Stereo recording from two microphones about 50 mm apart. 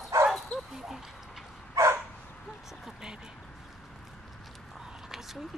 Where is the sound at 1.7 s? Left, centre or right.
Right.